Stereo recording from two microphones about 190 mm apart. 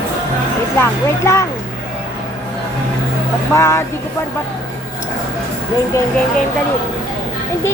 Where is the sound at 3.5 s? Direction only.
15° left (ahead or behind).